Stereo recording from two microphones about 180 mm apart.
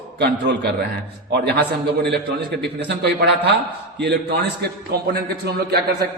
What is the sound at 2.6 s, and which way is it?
A man's voice, 65° right (ahead or behind).